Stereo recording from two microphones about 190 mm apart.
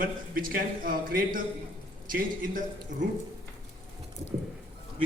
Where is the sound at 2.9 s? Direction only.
40° right (ahead or behind).